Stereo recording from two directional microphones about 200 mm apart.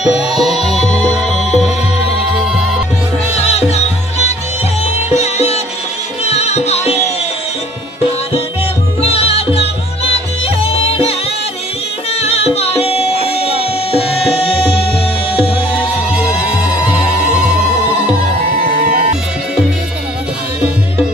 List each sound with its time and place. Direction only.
0.0 s music: centre (ahead or behind)
3.3 s music: 30° left (ahead or behind)
4.9 s music: 35° left (ahead or behind)
9.0 s music: 30° left (ahead or behind)
12.2 s music: 30° left (ahead or behind)
16.2 s music: 5° right (ahead or behind)
18.4 s music: 50° right (ahead or behind)